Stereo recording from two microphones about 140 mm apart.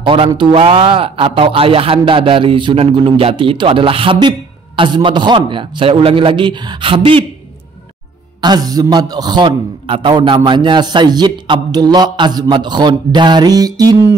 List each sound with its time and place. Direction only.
0.0 s a man's voice: 40° right (ahead or behind)
8.4 s a man's voice: 30° right (ahead or behind)